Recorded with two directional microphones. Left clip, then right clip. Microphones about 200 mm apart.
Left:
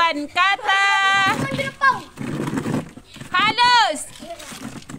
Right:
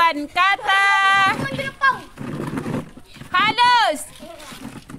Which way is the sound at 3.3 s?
Centre (ahead or behind).